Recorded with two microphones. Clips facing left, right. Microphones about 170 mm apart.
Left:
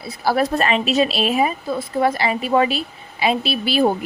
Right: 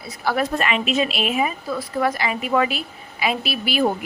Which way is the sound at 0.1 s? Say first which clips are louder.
Left 3 dB; 35° left (ahead or behind).